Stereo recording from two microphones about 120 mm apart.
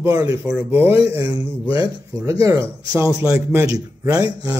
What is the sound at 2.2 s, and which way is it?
Speech, 25° right (ahead or behind).